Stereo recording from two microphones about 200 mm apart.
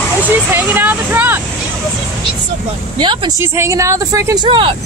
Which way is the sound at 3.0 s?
25° right (ahead or behind).